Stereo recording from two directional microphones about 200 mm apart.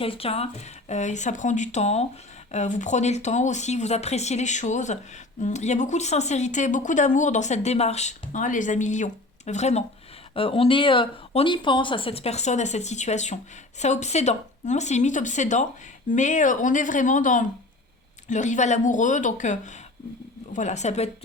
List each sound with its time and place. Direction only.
0.0 s speech: 30° left (ahead or behind)